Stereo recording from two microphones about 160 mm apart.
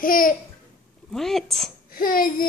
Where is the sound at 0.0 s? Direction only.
60° left (ahead or behind).